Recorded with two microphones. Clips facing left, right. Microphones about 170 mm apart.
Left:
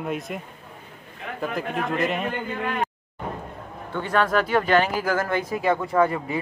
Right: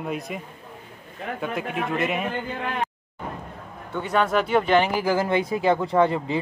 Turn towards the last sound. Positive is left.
turn(degrees=-25)  # may be behind; listen again after turning